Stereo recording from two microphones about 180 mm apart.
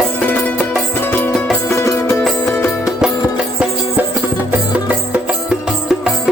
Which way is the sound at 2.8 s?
5° right (ahead or behind).